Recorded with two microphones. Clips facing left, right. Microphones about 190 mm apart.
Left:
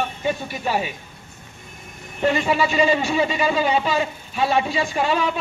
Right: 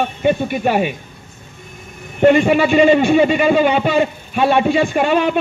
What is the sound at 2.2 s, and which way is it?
A man's voice, 65° right (ahead or behind).